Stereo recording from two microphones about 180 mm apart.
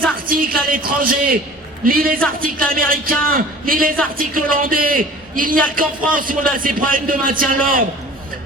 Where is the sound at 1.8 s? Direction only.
55° right (ahead or behind).